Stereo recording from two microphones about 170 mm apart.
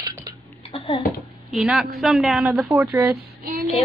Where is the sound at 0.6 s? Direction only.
30° left (ahead or behind).